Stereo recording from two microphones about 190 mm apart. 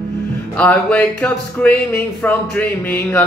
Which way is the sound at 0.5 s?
5° left (ahead or behind).